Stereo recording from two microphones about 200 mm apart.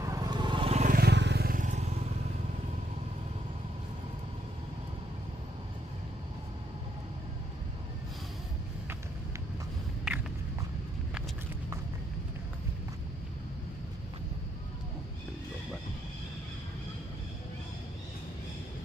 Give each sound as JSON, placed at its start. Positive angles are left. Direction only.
{"t": 0.0, "sound": "vehicle", "side_deg": -15}
{"t": 0.9, "sound": "vehicle", "side_deg": -55}